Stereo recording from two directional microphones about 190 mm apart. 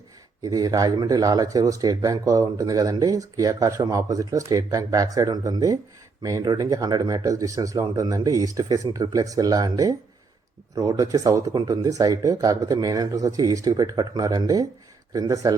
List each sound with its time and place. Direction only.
0.4 s speech: 20° right (ahead or behind)